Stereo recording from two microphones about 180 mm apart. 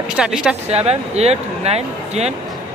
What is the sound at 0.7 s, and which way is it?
Speech, 35° right (ahead or behind).